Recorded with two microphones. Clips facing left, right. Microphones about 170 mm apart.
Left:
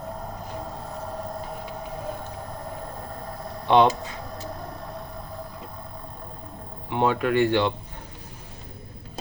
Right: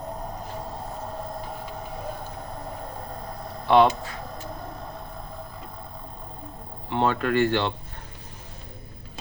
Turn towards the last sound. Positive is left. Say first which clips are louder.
# left 2 dB
turn(degrees=15)  # may be behind; listen again after turning